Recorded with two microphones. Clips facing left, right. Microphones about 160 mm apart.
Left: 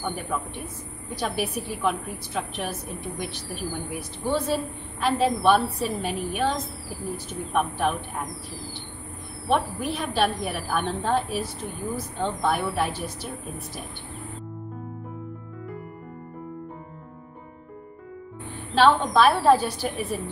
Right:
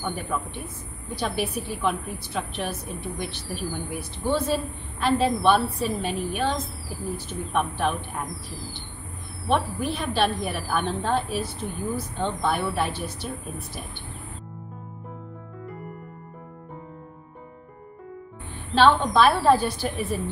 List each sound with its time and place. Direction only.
0.0 s a woman's voice: 10° left (ahead or behind)
1.4 s a woman's voice: 10° left (ahead or behind)
9.5 s a woman's voice: 5° left (ahead or behind)
18.8 s a woman's voice: centre (ahead or behind)